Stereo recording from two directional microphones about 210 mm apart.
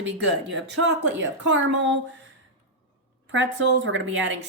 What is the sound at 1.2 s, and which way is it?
Speech, 60° right (ahead or behind).